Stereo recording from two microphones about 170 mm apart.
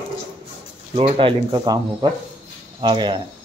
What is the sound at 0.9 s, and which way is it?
Speech, 35° right (ahead or behind).